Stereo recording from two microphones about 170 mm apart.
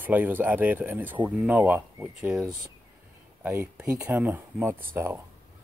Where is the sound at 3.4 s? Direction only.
15° right (ahead or behind).